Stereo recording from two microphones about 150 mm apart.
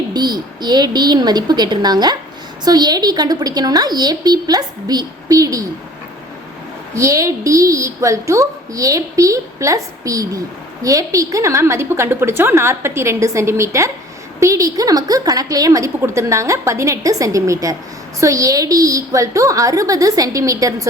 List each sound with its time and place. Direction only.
0.1 s a woman's voice: 30° right (ahead or behind)
6.9 s a woman's voice: 20° right (ahead or behind)